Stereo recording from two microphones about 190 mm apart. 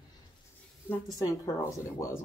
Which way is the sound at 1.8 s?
15° left (ahead or behind).